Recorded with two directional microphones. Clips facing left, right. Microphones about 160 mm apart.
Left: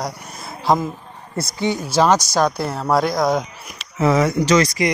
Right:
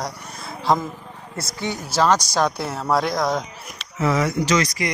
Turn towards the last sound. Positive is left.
turn(degrees=20)  # may be behind; listen again after turning